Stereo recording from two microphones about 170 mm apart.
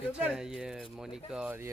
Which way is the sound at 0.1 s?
5° right (ahead or behind).